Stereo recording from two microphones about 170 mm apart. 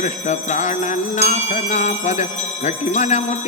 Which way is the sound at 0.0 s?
45° left (ahead or behind).